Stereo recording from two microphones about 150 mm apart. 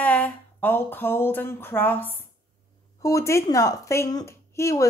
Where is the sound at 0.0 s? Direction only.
10° left (ahead or behind).